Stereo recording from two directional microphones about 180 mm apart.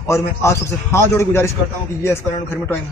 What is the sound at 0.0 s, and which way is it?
A man's voice, 15° left (ahead or behind).